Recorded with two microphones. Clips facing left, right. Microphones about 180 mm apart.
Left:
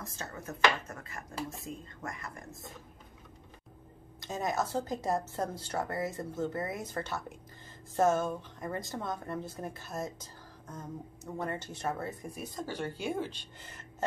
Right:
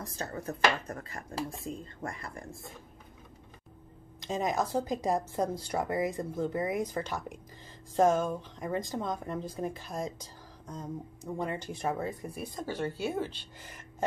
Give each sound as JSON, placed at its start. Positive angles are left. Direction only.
{"t": 0.0, "sound": "speech", "side_deg": -35}
{"t": 4.2, "sound": "speech", "side_deg": -15}
{"t": 11.3, "sound": "speech", "side_deg": -15}
{"t": 12.7, "sound": "speech", "side_deg": 10}
{"t": 13.4, "sound": "speech", "side_deg": -10}